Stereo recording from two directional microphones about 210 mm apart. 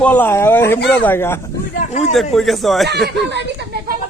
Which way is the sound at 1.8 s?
35° left (ahead or behind).